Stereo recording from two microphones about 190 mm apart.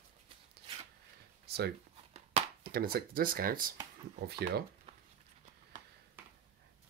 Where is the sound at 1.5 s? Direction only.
55° right (ahead or behind).